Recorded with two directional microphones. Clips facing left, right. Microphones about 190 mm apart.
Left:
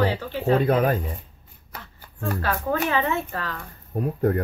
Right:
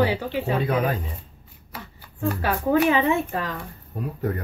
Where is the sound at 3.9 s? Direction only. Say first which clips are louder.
Left 5 dB; 50° left (ahead or behind).